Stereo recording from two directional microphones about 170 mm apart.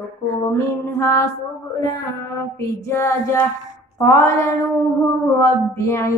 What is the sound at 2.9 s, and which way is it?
Female singing, 15° left (ahead or behind).